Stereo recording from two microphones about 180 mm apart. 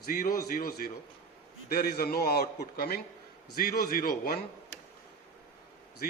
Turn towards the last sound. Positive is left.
turn(degrees=60)  # may be behind; listen again after turning